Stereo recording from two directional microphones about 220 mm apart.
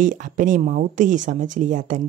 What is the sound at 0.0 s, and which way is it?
Speech, 35° right (ahead or behind).